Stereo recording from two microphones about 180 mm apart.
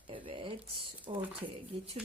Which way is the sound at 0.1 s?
30° right (ahead or behind).